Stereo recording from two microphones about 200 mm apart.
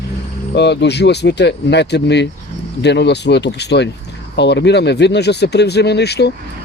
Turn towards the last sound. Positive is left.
turn(degrees=55)  # may be behind; listen again after turning